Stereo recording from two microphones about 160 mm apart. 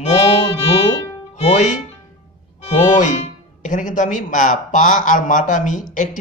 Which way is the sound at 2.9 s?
50° left (ahead or behind).